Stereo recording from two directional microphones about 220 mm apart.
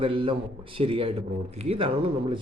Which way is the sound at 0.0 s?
25° right (ahead or behind).